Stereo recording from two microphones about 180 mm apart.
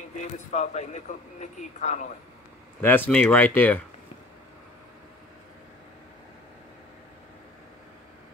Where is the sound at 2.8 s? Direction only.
10° left (ahead or behind).